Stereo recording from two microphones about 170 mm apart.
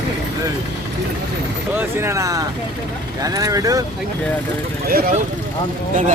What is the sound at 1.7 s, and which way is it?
Speech, 15° right (ahead or behind).